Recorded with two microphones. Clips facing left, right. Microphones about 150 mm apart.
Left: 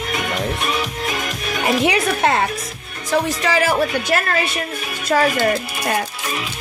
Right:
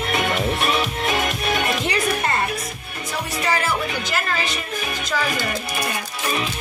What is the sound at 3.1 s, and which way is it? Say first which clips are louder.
A woman's voice: left 5 dB; 90° left.